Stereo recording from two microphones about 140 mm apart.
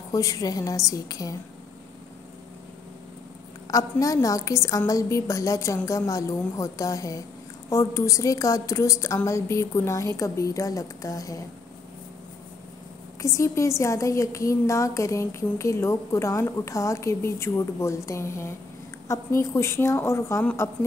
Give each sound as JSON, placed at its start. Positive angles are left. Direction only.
{"t": 0.1, "sound": "a woman's voice", "side_deg": 25}
{"t": 3.7, "sound": "a woman's voice", "side_deg": 25}
{"t": 13.2, "sound": "a woman's voice", "side_deg": 20}